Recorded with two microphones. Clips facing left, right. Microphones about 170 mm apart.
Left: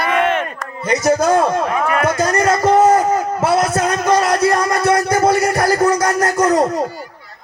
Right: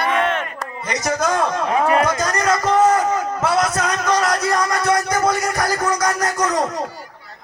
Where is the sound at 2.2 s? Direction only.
25° left (ahead or behind).